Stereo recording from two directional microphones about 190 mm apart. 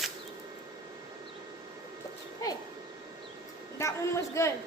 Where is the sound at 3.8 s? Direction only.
15° left (ahead or behind).